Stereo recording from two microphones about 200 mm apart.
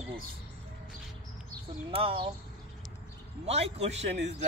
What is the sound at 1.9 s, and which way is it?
Speech, 30° right (ahead or behind).